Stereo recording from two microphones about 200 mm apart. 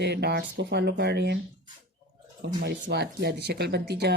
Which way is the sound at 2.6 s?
55° right (ahead or behind).